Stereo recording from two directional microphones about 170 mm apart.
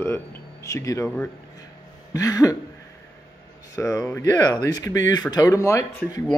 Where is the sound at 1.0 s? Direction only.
5° left (ahead or behind).